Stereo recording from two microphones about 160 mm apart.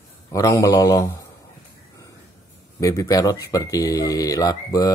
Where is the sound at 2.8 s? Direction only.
20° left (ahead or behind).